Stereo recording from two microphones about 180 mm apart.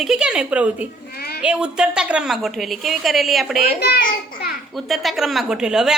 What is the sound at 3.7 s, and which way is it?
Speech, 60° left (ahead or behind).